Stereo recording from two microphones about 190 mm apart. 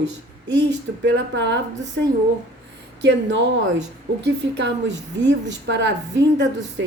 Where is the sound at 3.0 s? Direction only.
65° right (ahead or behind).